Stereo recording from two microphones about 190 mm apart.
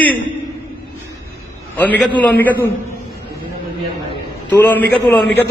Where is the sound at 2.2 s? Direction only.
10° left (ahead or behind).